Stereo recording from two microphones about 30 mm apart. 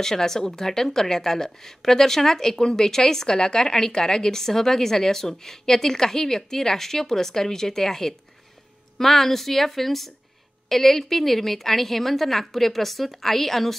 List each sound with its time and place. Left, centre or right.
0.0 s a woman's voice: centre